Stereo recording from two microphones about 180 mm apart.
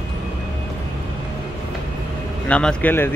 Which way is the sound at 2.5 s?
5° left (ahead or behind).